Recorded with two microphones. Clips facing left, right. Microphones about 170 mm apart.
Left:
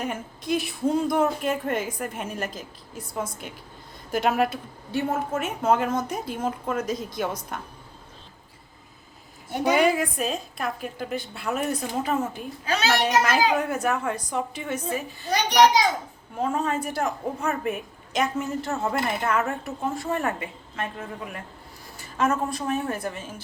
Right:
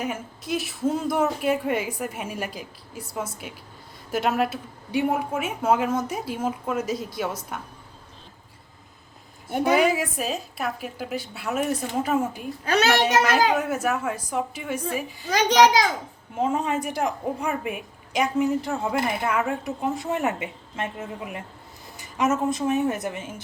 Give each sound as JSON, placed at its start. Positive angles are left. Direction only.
{"t": 0.0, "sound": "a woman's voice", "side_deg": -5}
{"t": 4.9, "sound": "a woman's voice", "side_deg": -15}
{"t": 9.6, "sound": "a woman's voice", "side_deg": -5}
{"t": 16.3, "sound": "a woman's voice", "side_deg": -20}